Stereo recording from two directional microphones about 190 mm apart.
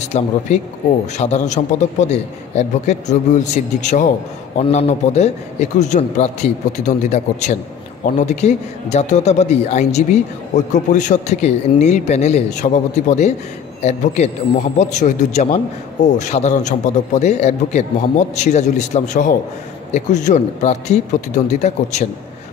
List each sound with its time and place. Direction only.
0.1 s a man's voice: 35° left (ahead or behind)